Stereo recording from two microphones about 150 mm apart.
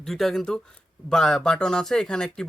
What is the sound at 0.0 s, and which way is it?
Speech, centre (ahead or behind).